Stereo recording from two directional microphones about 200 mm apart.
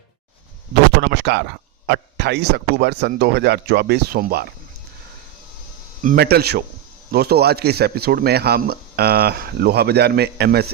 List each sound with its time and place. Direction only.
0.7 s speech: 55° right (ahead or behind)
6.0 s speech: 45° right (ahead or behind)